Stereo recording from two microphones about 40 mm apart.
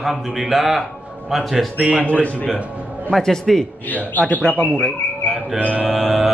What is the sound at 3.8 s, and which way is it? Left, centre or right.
Speech, left.